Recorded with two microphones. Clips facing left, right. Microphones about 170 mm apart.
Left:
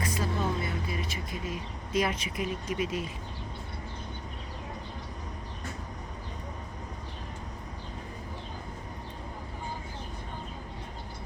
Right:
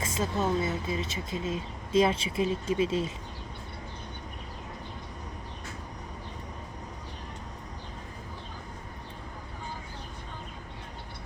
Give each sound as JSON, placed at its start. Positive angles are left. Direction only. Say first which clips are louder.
{"t": 0.0, "sound": "speech", "louder": "right 2 dB", "side_deg": -25}